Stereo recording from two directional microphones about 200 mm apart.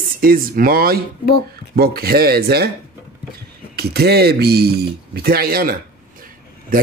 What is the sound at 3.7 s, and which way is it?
Speech, 55° right (ahead or behind).